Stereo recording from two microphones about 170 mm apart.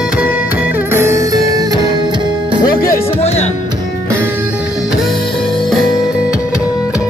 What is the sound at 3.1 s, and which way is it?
Music, 40° left (ahead or behind).